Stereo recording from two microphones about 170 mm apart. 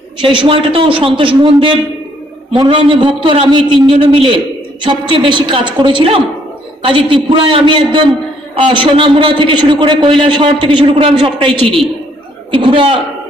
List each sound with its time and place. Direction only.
0.2 s a man's voice: 30° right (ahead or behind)